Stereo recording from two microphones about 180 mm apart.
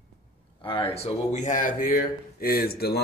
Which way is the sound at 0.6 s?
30° left (ahead or behind).